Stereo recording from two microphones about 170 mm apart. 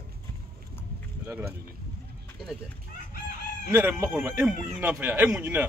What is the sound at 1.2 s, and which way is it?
Speech, 15° right (ahead or behind).